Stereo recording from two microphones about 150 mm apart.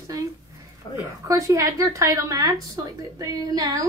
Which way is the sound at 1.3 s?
20° right (ahead or behind).